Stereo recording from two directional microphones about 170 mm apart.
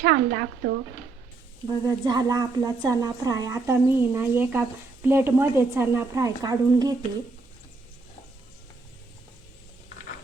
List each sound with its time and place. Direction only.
0.0 s speech: 70° right (ahead or behind)
1.6 s a woman's voice: 25° right (ahead or behind)